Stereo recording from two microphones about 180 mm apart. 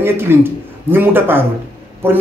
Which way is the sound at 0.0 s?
10° right (ahead or behind).